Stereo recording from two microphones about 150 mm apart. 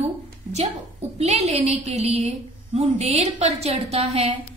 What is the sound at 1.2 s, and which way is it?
A woman's voice, 45° right (ahead or behind).